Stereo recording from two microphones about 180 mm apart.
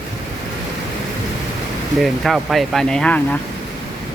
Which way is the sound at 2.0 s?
Centre (ahead or behind).